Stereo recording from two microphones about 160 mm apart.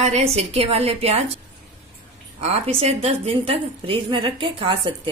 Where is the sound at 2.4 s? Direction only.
40° right (ahead or behind).